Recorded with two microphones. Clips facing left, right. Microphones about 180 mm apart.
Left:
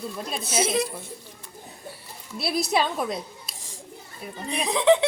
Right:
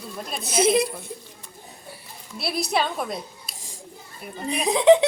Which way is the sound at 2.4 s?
Centre (ahead or behind).